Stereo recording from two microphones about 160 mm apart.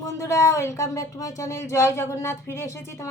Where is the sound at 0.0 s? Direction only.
20° left (ahead or behind).